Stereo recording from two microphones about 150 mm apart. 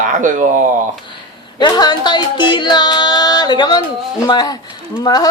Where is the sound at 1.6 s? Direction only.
30° left (ahead or behind).